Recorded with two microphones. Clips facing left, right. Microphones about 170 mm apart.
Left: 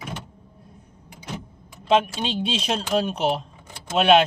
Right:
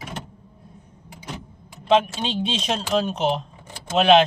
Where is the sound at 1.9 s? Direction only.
Centre (ahead or behind).